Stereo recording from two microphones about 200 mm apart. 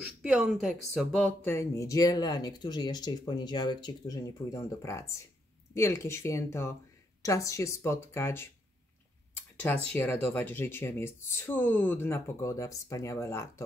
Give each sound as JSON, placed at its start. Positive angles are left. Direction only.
{"t": 0.0, "sound": "speech", "side_deg": -5}
{"t": 9.9, "sound": "speech", "side_deg": 10}